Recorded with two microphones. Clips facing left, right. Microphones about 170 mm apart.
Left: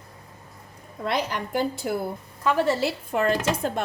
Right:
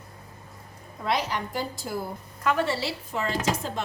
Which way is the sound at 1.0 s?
55° left (ahead or behind).